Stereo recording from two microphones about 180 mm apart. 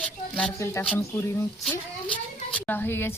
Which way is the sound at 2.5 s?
10° left (ahead or behind).